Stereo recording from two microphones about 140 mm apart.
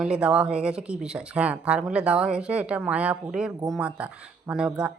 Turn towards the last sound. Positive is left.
turn(degrees=-5)  # may be behind; listen again after turning